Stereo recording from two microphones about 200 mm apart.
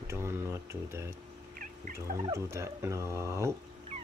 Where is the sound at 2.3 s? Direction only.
15° right (ahead or behind).